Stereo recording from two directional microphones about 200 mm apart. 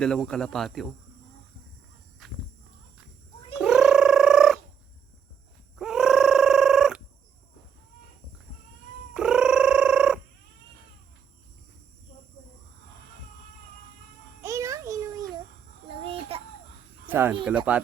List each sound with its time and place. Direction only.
0.0 s speech: 5° left (ahead or behind)
2.2 s walk: centre (ahead or behind)
3.6 s cat: 5° right (ahead or behind)
5.7 s a sound: 5° right (ahead or behind)
9.1 s cat: 5° right (ahead or behind)
14.4 s a sound: 15° right (ahead or behind)
15.9 s a sound: 30° right (ahead or behind)
17.1 s cricket: 10° right (ahead or behind)
17.7 s speech: 5° right (ahead or behind)